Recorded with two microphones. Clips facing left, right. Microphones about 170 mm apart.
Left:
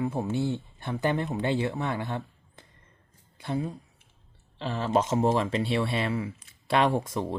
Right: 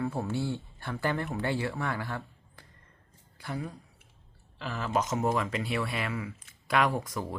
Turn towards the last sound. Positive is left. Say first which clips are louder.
# left 4 dB
turn(degrees=25)  # may be behind; listen again after turning